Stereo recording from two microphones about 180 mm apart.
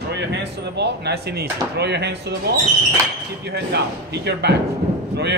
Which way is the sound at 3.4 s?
70° right (ahead or behind).